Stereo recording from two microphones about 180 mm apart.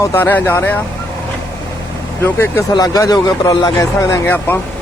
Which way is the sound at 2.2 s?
10° left (ahead or behind).